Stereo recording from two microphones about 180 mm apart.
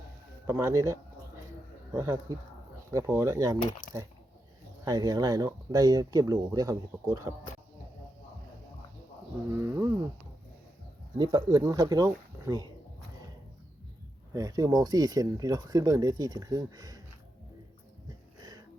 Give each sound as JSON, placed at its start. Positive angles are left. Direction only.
{"t": 0.4, "sound": "speech", "side_deg": -15}
{"t": 4.9, "sound": "speech", "side_deg": -20}
{"t": 9.5, "sound": "a sound", "side_deg": -15}
{"t": 11.2, "sound": "speech", "side_deg": -25}
{"t": 14.3, "sound": "speech", "side_deg": -20}
{"t": 18.3, "sound": "a sound", "side_deg": -20}